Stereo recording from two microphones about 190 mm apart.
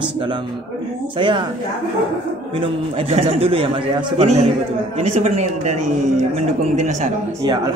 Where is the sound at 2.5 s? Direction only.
30° right (ahead or behind).